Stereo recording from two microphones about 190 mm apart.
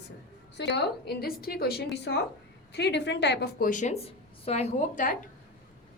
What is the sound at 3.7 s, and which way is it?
Speech, 40° left (ahead or behind).